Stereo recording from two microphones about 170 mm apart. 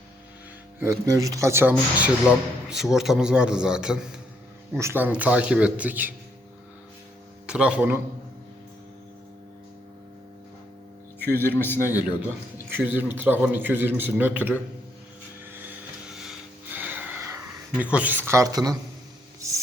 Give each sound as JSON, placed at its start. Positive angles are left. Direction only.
{"t": 0.8, "sound": "a man's voice", "side_deg": -15}
{"t": 7.4, "sound": "speech", "side_deg": -5}
{"t": 11.2, "sound": "a man's voice", "side_deg": 10}
{"t": 12.7, "sound": "a man's voice", "side_deg": -10}
{"t": 15.5, "sound": "vehicle", "side_deg": -10}
{"t": 16.7, "sound": "music", "side_deg": -10}
{"t": 17.7, "sound": "a man's voice", "side_deg": -10}